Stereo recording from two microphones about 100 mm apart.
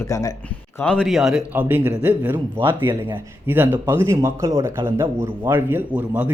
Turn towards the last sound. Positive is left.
turn(degrees=-15)  # may be behind; listen again after turning